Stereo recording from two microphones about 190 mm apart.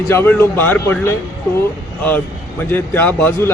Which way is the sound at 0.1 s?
10° left (ahead or behind).